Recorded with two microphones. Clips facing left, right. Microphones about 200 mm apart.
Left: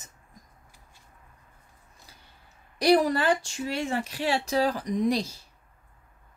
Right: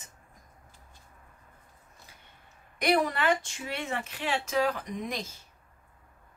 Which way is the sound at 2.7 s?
35° left (ahead or behind).